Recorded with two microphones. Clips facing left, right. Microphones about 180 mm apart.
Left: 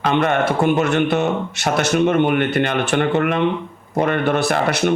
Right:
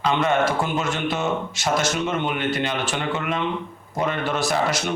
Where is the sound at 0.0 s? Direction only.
55° left (ahead or behind).